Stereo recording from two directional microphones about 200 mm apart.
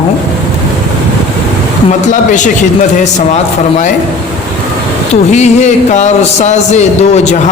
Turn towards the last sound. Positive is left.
turn(degrees=35)  # may be behind; listen again after turning